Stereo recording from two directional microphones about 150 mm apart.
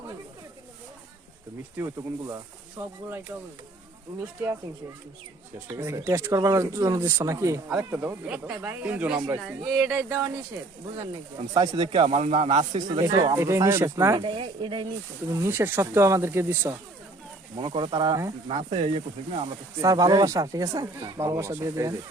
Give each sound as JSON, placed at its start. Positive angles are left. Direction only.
{"t": 1.8, "sound": "speech", "side_deg": -25}
{"t": 5.8, "sound": "speech", "side_deg": -15}
{"t": 9.8, "sound": "speech", "side_deg": -15}
{"t": 11.5, "sound": "speech", "side_deg": -25}
{"t": 11.9, "sound": "speech", "side_deg": -45}
{"t": 14.2, "sound": "a woman's voice", "side_deg": -35}
{"t": 15.3, "sound": "speech", "side_deg": -20}
{"t": 17.6, "sound": "a woman's voice", "side_deg": -30}
{"t": 19.8, "sound": "speech", "side_deg": -25}